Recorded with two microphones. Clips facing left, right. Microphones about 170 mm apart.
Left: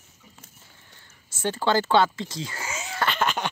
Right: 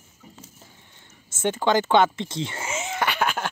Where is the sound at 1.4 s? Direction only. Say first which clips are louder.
Right 2 dB; 20° right (ahead or behind).